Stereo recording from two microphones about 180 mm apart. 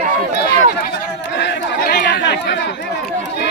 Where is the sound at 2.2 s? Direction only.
75° left (ahead or behind).